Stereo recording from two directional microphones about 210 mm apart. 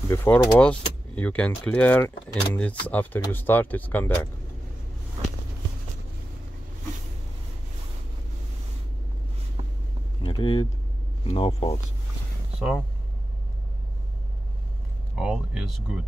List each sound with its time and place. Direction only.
0.1 s speech: 10° left (ahead or behind)
10.2 s vehicle: 25° left (ahead or behind)
11.2 s speech: 25° left (ahead or behind)
12.5 s speech: centre (ahead or behind)
15.1 s speech: 5° right (ahead or behind)